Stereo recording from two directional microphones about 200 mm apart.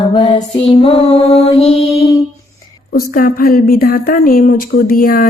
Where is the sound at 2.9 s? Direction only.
45° left (ahead or behind).